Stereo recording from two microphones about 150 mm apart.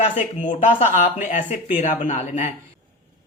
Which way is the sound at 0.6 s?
55° left (ahead or behind).